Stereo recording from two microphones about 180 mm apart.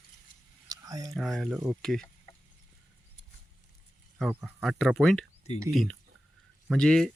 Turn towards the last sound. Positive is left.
turn(degrees=5)  # may be behind; listen again after turning